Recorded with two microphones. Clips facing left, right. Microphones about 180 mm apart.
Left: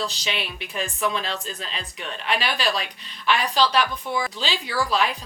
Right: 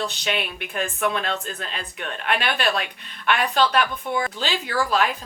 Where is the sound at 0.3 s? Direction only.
50° right (ahead or behind).